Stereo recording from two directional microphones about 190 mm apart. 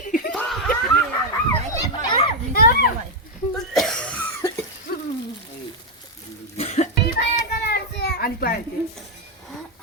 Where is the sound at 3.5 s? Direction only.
Centre (ahead or behind).